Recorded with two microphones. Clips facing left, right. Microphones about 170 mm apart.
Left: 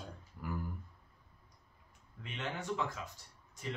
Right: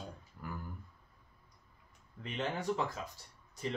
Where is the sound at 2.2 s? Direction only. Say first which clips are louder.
Right 4 dB; 35° right (ahead or behind).